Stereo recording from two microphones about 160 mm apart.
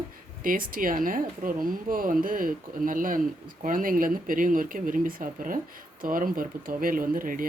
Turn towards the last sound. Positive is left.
turn(degrees=-60)  # may be behind; listen again after turning